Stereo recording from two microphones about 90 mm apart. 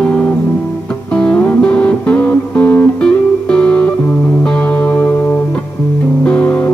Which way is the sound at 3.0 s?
10° left (ahead or behind).